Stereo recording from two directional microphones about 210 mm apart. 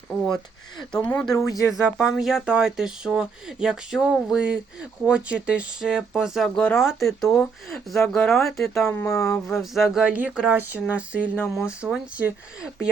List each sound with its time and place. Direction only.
1.0 s speech: 5° left (ahead or behind)
8.9 s speech: 15° left (ahead or behind)
9.7 s speech: centre (ahead or behind)
11.2 s speech: 10° left (ahead or behind)
11.5 s speech: 5° right (ahead or behind)